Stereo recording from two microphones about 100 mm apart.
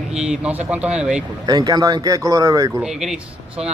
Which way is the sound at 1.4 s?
40° right (ahead or behind).